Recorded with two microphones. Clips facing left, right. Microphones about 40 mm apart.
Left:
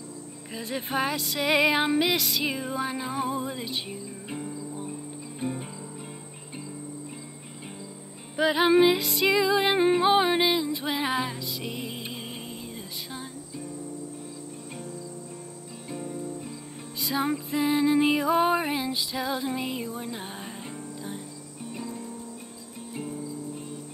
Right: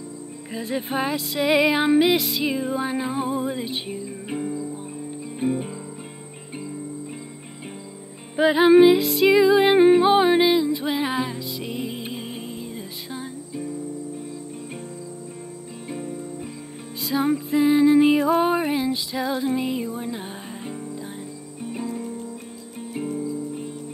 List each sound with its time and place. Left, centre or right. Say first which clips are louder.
0.5 s music: right 5 dB; centre
1.9 s music: right 6 dB; centre
8.5 s music: right 7 dB; centre
15.9 s music: right 2 dB; right
17.0 s music: right 5 dB; centre